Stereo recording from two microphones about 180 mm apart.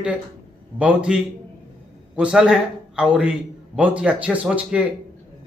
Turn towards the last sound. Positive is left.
turn(degrees=-5)  # may be behind; listen again after turning